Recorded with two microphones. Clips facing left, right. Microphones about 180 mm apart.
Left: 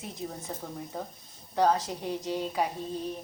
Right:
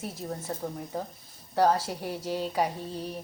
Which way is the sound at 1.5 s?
10° right (ahead or behind).